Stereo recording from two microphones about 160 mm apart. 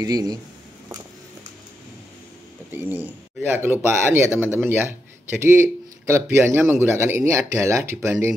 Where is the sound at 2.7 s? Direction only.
10° right (ahead or behind).